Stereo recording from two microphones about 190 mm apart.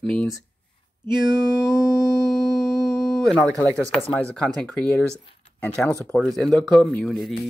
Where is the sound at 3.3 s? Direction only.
5° left (ahead or behind).